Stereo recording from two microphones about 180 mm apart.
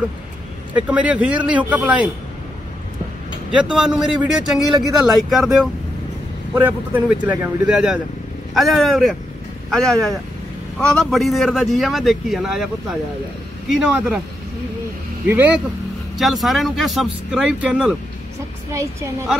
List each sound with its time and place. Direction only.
0.7 s speech: 10° right (ahead or behind)
3.5 s a man's voice: 5° right (ahead or behind)
13.7 s a man's voice: 5° right (ahead or behind)
15.2 s a man's voice: 10° right (ahead or behind)
18.7 s speech: 15° right (ahead or behind)